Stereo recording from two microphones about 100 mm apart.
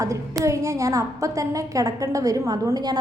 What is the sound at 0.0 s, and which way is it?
A woman's voice, 30° right (ahead or behind).